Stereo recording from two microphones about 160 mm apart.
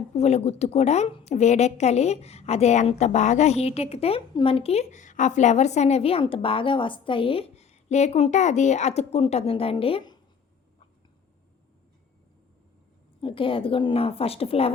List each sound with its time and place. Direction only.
0.1 s a woman's voice: 40° left (ahead or behind)
13.2 s a woman's voice: 35° left (ahead or behind)